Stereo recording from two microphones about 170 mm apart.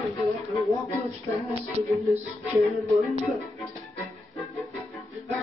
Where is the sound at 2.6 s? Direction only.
Centre (ahead or behind).